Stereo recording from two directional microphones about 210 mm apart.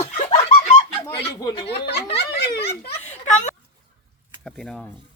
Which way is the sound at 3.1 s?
35° left (ahead or behind).